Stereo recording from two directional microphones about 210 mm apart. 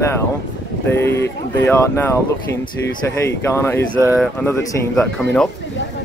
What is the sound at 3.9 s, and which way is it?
Speech, 10° right (ahead or behind).